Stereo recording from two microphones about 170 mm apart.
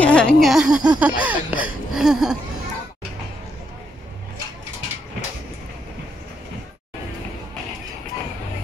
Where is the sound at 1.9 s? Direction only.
5° right (ahead or behind).